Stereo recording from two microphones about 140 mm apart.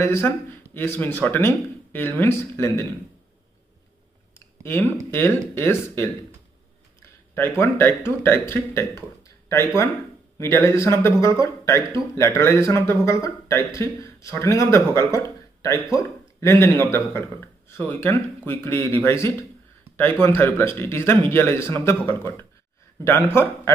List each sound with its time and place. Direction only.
0.0 s speech: 15° left (ahead or behind)
4.6 s speech: 15° left (ahead or behind)
7.0 s a sound: 15° left (ahead or behind)
8.0 s speech: 15° left (ahead or behind)
10.3 s speech: 20° left (ahead or behind)